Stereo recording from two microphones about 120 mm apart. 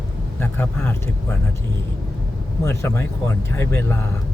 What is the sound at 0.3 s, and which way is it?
Speech, 15° left (ahead or behind).